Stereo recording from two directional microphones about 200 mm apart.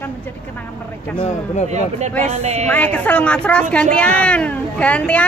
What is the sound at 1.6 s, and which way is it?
Speech, 35° right (ahead or behind).